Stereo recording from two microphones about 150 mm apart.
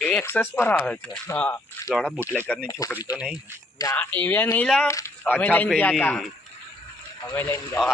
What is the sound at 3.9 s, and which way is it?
Speech, 10° left (ahead or behind).